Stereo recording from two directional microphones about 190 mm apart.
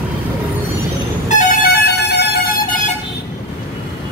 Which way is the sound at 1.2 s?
55° left (ahead or behind).